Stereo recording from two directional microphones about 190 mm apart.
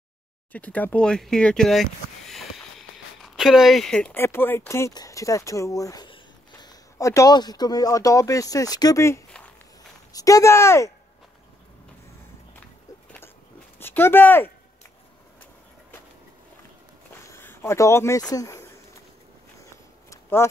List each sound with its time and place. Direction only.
0.5 s speech: 10° left (ahead or behind)
13.7 s speech: 10° left (ahead or behind)
17.1 s a sound: 15° left (ahead or behind)